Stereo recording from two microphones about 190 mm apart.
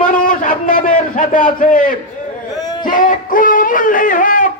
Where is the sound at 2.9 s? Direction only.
45° left (ahead or behind).